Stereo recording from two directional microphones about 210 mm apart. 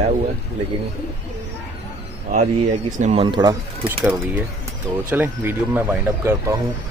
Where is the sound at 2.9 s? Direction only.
30° right (ahead or behind).